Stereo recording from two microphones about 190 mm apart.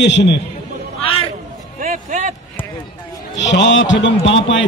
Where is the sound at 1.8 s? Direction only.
45° right (ahead or behind).